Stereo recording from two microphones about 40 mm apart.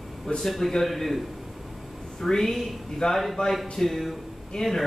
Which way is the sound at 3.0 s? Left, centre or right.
Centre.